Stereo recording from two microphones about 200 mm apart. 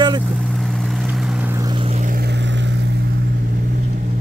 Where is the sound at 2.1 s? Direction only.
55° right (ahead or behind); by 3.5 s 70° right (ahead or behind).